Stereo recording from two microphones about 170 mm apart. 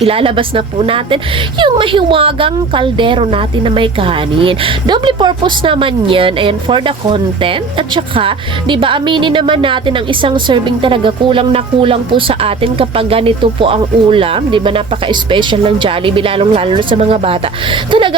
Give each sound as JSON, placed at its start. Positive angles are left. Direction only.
{"t": 0.0, "sound": "a woman's voice", "side_deg": -35}